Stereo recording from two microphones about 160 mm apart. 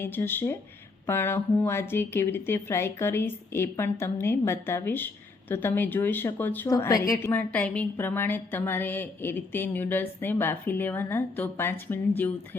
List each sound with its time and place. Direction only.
0.0 s a woman's voice: 15° left (ahead or behind)
6.7 s a woman's voice: 20° left (ahead or behind)